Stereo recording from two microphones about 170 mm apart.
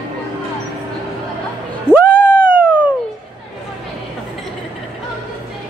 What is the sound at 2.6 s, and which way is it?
Cat, 10° right (ahead or behind).